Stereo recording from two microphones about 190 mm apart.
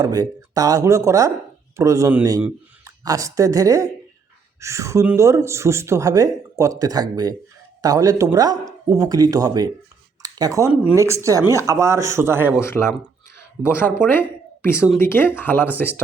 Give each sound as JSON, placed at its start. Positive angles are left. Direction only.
{"t": 0.0, "sound": "speech", "side_deg": -20}
{"t": 12.6, "sound": "speech", "side_deg": 15}
{"t": 14.1, "sound": "a sound", "side_deg": 10}
{"t": 14.9, "sound": "speech", "side_deg": 10}